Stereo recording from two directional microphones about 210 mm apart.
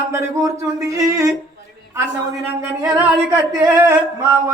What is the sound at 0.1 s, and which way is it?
Speech, 15° right (ahead or behind).